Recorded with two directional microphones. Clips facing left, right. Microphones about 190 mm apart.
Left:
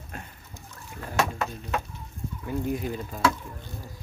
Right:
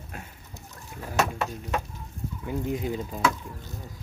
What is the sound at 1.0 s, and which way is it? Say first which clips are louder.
Speech: right 1 dB; 5° right (ahead or behind).